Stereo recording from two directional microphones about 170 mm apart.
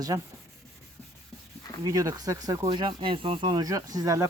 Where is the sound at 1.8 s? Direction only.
20° right (ahead or behind).